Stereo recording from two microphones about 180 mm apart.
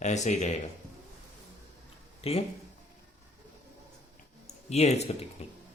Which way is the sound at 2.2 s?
35° left (ahead or behind).